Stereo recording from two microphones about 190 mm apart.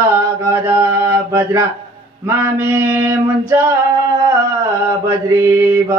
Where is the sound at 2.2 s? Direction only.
15° right (ahead or behind).